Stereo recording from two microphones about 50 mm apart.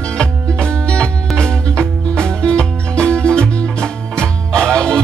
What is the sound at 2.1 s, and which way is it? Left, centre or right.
Music, centre.